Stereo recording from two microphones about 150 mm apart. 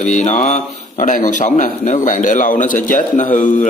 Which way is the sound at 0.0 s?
55° left (ahead or behind).